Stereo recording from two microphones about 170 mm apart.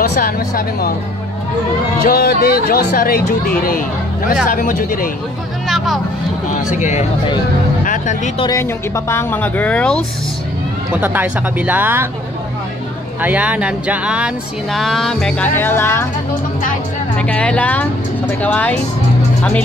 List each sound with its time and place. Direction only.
0.0 s speech: 65° left (ahead or behind)
2.0 s speech: 60° left (ahead or behind)
4.5 s speech: 55° left (ahead or behind)
6.7 s speech: 45° left (ahead or behind)
7.8 s music: 50° left (ahead or behind)
8.5 s speech: 15° left (ahead or behind)
11.0 s speech: 10° right (ahead or behind)
13.2 s speech: 10° right (ahead or behind); by 16.1 s 15° left (ahead or behind)
17.2 s speech: 5° left (ahead or behind)